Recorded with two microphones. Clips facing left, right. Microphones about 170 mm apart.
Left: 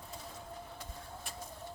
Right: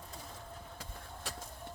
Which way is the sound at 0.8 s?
80° right.